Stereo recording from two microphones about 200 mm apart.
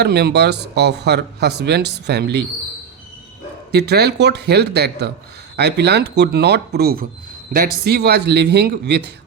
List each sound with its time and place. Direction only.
0.0 s speech: 55° right (ahead or behind)
3.7 s speech: 55° right (ahead or behind)